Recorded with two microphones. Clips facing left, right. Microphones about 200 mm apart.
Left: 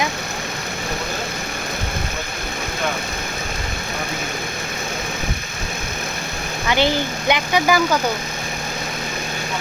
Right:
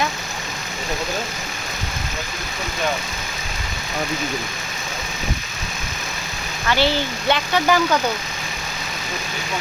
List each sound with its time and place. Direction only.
6.7 s speech: 15° left (ahead or behind)